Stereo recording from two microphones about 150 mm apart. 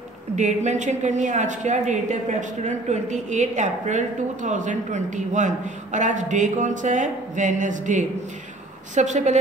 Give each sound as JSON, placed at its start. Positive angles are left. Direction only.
{"t": 0.4, "sound": "a woman's voice", "side_deg": -50}